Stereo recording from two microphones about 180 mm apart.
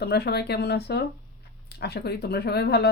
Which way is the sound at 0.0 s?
65° left (ahead or behind).